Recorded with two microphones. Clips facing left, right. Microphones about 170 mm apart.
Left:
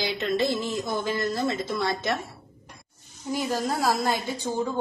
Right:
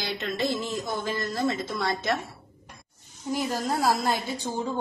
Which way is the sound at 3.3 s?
Centre (ahead or behind).